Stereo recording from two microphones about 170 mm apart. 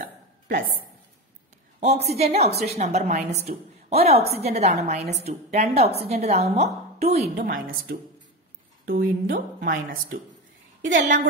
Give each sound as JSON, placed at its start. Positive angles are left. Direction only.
{"t": 0.0, "sound": "a sound", "side_deg": -55}
{"t": 1.8, "sound": "a woman's voice", "side_deg": -40}
{"t": 7.4, "sound": "a woman's voice", "side_deg": -65}